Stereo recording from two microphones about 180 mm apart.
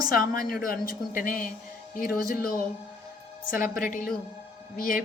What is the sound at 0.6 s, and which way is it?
A woman's voice, 55° left (ahead or behind).